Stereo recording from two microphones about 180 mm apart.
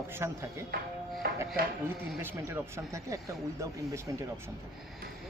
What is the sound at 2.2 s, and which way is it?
Speech, 15° right (ahead or behind).